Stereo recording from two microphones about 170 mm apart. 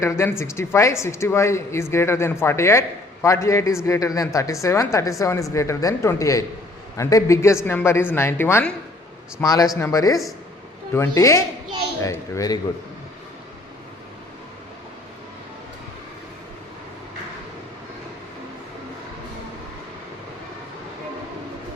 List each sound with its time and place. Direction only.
0.0 s a woman's voice: 15° left (ahead or behind)